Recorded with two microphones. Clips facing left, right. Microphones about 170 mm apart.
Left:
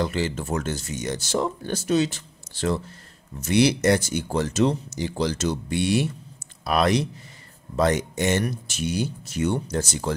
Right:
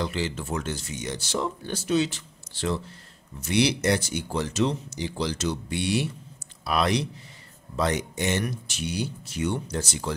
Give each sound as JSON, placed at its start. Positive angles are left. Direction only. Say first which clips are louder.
{"t": 0.0, "sound": "speech", "louder": "left 4 dB", "side_deg": 45}